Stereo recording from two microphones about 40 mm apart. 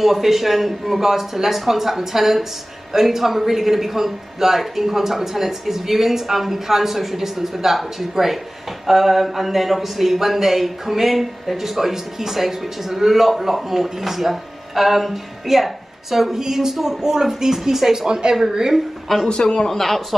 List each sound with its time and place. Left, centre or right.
0.0 s a man's voice: centre
18.0 s a woman's voice: right
19.2 s a man's voice: left; by 20.2 s centre